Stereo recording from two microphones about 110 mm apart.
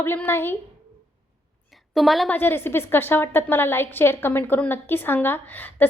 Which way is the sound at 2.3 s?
20° left (ahead or behind).